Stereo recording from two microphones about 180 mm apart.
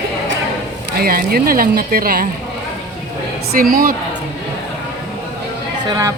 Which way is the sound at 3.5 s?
50° right (ahead or behind).